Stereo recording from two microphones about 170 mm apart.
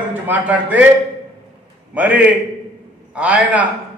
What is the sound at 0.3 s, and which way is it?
Speech, 10° right (ahead or behind).